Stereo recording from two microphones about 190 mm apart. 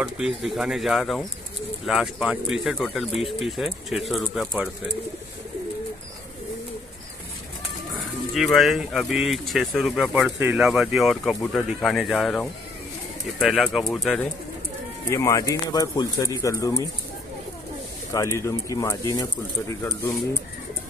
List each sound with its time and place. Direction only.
0.0 s speech: 5° right (ahead or behind)
8.0 s speech: centre (ahead or behind)
15.0 s speech: 15° left (ahead or behind)
18.1 s speech: 15° left (ahead or behind)